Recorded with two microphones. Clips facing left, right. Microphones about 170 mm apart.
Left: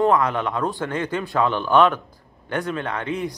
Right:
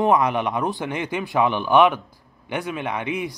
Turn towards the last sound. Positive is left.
turn(degrees=-15)  # may be behind; listen again after turning